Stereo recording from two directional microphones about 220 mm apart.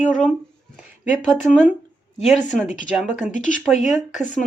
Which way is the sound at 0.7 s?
5° right (ahead or behind).